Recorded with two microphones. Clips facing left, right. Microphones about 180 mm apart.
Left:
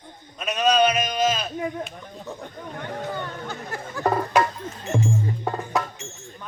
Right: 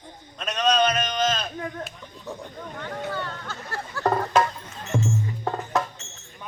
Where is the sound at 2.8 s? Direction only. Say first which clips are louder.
Left 1 dB; 15° left (ahead or behind).